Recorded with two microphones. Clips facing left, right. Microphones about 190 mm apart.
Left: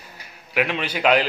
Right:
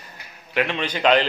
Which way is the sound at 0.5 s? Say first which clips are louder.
Even; 5° left (ahead or behind).